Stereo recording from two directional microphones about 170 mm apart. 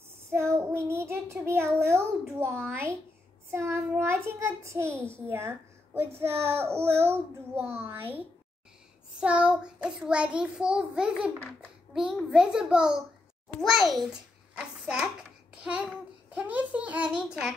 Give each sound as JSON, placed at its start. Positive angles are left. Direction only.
{"t": 0.3, "sound": "a child's voice", "side_deg": -15}
{"t": 9.2, "sound": "child singing", "side_deg": -5}
{"t": 11.9, "sound": "a child's voice", "side_deg": -5}
{"t": 12.3, "sound": "child singing", "side_deg": -5}
{"t": 13.6, "sound": "a child's voice", "side_deg": 0}
{"t": 16.3, "sound": "a child's voice", "side_deg": -10}